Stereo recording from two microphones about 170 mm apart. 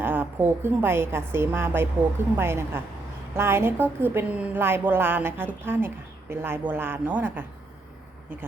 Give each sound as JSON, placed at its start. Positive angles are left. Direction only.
{"t": 0.0, "sound": "a woman's voice", "side_deg": -10}